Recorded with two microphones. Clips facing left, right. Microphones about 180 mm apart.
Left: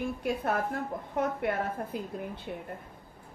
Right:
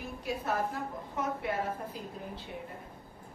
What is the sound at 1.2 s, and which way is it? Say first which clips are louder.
A woman's voice: left 4 dB; 55° left (ahead or behind).